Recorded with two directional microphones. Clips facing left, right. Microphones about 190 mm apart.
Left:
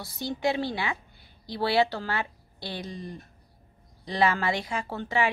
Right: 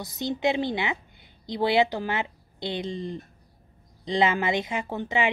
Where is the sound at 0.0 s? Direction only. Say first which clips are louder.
Right 2 dB; 20° right (ahead or behind).